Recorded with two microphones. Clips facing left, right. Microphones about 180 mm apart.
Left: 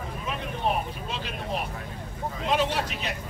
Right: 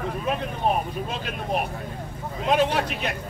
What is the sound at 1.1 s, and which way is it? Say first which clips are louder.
A man's voice: right 4 dB; 50° right (ahead or behind).